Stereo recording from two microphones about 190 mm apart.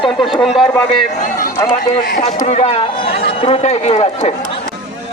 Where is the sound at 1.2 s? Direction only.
45° left (ahead or behind); by 4.6 s 30° left (ahead or behind).